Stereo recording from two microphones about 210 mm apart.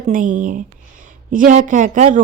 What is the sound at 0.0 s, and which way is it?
Speech, 35° right (ahead or behind).